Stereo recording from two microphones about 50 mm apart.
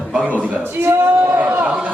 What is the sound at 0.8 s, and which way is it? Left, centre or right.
Speech, right.